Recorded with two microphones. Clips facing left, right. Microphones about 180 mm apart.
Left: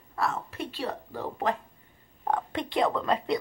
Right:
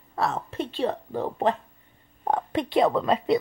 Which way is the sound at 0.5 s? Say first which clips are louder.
Right 6 dB; 25° right (ahead or behind).